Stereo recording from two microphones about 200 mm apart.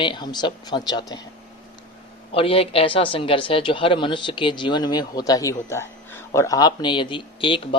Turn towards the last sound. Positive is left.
turn(degrees=25)  # may be behind; listen again after turning